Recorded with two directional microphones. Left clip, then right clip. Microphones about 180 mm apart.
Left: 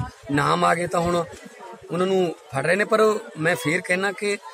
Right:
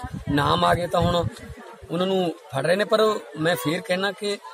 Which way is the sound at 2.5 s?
10° left (ahead or behind).